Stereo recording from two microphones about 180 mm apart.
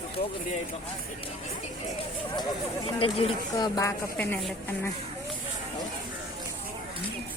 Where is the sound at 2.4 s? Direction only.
30° left (ahead or behind).